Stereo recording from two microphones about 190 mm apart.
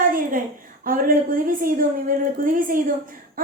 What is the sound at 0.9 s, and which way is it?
A woman's voice, 50° right (ahead or behind).